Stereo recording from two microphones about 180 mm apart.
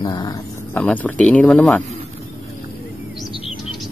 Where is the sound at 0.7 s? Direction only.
10° left (ahead or behind).